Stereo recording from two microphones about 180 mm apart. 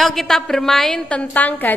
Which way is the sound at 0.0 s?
Centre (ahead or behind).